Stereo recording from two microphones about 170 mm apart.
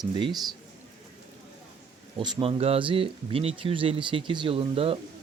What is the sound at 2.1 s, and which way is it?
Speech, 30° right (ahead or behind).